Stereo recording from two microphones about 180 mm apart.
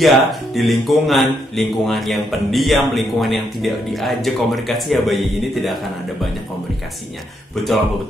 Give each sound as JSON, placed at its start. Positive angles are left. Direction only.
{"t": 0.0, "sound": "speech", "side_deg": 0}